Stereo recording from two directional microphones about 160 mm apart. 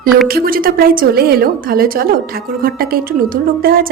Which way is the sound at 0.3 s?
65° right (ahead or behind).